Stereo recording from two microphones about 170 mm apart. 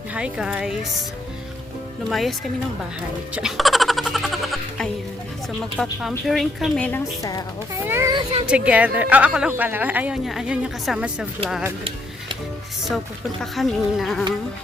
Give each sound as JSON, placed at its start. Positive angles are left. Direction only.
{"t": 0.1, "sound": "speech", "side_deg": -5}
{"t": 2.0, "sound": "speech", "side_deg": 0}
{"t": 3.3, "sound": "music", "side_deg": 0}
{"t": 5.7, "sound": "speech", "side_deg": 0}
{"t": 7.9, "sound": "a woman's voice", "side_deg": -15}
{"t": 8.1, "sound": "speech", "side_deg": -35}
{"t": 8.4, "sound": "a woman's voice", "side_deg": -5}
{"t": 13.4, "sound": "speech", "side_deg": 0}